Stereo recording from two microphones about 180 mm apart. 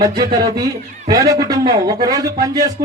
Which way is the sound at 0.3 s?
20° right (ahead or behind).